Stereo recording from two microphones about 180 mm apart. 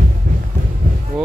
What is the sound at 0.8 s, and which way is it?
Music, 50° right (ahead or behind).